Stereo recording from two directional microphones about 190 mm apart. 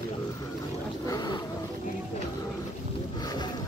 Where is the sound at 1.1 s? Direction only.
20° left (ahead or behind).